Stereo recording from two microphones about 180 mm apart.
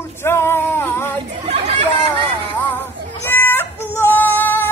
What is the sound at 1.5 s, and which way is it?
Chatter, 40° right (ahead or behind).